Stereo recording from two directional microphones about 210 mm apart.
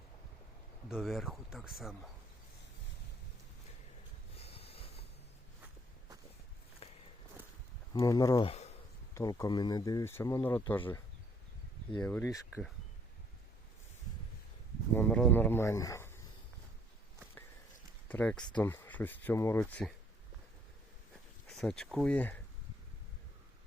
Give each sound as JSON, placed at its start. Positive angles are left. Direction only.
{"t": 0.9, "sound": "speech", "side_deg": 0}
{"t": 4.4, "sound": "a sound", "side_deg": 30}
{"t": 7.9, "sound": "speech", "side_deg": 15}
{"t": 9.1, "sound": "speech", "side_deg": 15}
{"t": 12.0, "sound": "speech", "side_deg": 10}
{"t": 14.9, "sound": "speech", "side_deg": 5}
{"t": 18.1, "sound": "speech", "side_deg": 5}
{"t": 21.5, "sound": "speech", "side_deg": 5}